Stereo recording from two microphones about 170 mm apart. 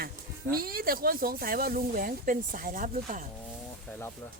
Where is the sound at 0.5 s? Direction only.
60° right (ahead or behind).